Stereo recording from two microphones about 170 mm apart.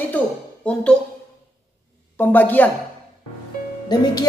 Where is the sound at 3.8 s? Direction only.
25° left (ahead or behind).